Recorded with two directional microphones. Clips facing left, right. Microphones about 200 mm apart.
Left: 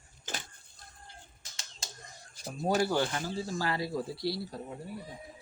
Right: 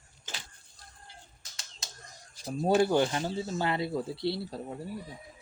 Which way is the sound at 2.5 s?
25° right (ahead or behind).